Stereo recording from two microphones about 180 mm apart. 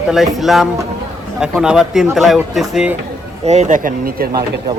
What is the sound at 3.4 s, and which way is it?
Speech, 40° right (ahead or behind).